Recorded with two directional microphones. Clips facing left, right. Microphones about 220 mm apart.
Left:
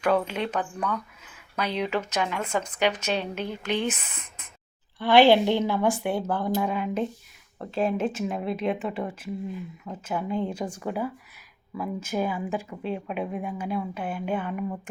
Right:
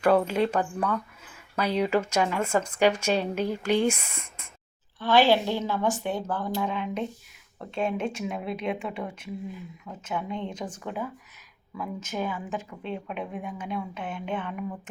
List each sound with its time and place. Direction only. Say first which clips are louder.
0.3 s speech: right 4 dB; 10° right (ahead or behind)
4.9 s a woman's voice: left 4 dB; 15° left (ahead or behind)